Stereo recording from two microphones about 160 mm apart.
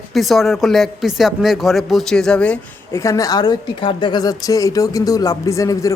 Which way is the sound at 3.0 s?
20° left (ahead or behind).